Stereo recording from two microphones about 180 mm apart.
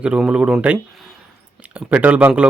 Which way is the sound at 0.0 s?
5° right (ahead or behind).